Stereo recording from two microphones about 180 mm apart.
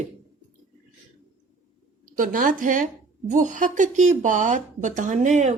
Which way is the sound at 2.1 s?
50° right (ahead or behind).